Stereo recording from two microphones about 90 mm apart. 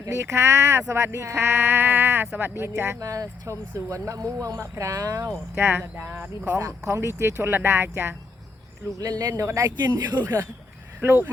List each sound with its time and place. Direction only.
0.0 s speech: 30° right (ahead or behind)
5.5 s speech: 25° right (ahead or behind)
6.6 s speech: 35° right (ahead or behind)
9.0 s speech: 45° right (ahead or behind)
9.3 s speech: 30° right (ahead or behind)
9.6 s speech: 50° right (ahead or behind)
11.0 s speech: 20° right (ahead or behind)